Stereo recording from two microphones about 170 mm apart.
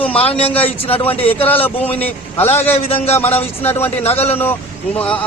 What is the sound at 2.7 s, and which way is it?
A man's voice, 35° left (ahead or behind).